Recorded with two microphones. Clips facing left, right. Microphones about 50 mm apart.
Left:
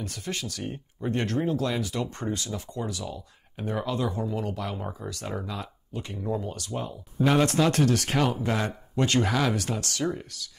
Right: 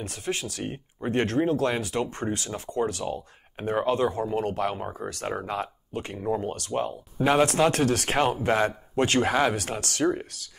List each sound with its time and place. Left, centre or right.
0.2 s speech: centre
0.6 s speech: right
7.2 s speech: centre; by 10.4 s right